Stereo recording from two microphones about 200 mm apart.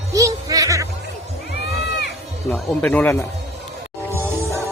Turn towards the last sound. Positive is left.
turn(degrees=-15)  # may be behind; listen again after turning